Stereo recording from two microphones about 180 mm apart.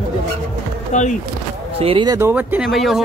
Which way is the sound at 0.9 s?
45° left (ahead or behind).